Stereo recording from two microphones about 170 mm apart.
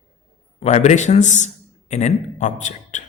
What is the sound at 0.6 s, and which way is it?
A man's voice, 40° left (ahead or behind).